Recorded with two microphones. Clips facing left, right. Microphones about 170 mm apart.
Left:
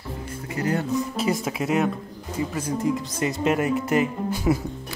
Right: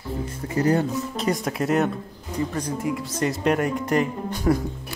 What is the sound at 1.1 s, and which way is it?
Speech, 5° left (ahead or behind).